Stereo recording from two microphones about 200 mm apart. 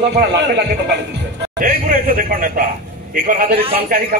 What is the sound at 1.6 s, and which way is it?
A man's voice, 45° right (ahead or behind).